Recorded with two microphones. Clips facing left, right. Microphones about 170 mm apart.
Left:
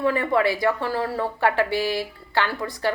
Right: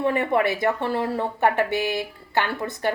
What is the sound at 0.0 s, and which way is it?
Speech, 20° right (ahead or behind).